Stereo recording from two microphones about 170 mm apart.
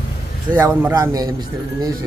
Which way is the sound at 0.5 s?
10° right (ahead or behind).